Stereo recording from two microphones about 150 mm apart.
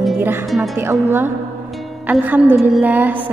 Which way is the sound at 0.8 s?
15° right (ahead or behind).